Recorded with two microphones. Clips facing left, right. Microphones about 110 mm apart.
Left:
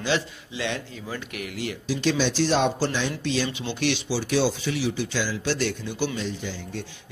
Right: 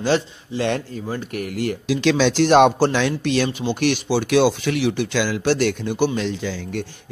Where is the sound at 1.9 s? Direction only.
85° right; by 3.5 s 65° right (ahead or behind).